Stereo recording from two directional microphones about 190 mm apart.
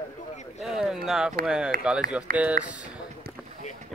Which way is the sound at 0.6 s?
5° right (ahead or behind).